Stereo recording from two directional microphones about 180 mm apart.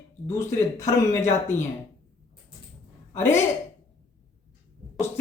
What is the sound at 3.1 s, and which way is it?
Speech, 15° left (ahead or behind).